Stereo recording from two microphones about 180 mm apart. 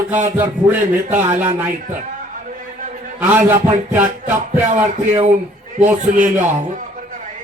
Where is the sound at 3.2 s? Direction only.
10° right (ahead or behind).